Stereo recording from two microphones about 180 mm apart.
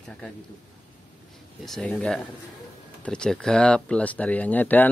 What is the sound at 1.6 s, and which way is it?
Speech, 5° left (ahead or behind).